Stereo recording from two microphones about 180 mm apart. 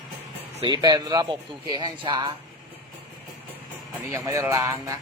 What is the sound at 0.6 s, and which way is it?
Speech, 25° right (ahead or behind).